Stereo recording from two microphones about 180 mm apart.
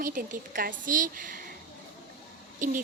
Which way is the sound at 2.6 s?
45° right (ahead or behind).